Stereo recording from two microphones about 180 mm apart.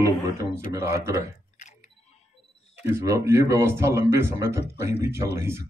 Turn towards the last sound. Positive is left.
turn(degrees=-15)  # may be behind; listen again after turning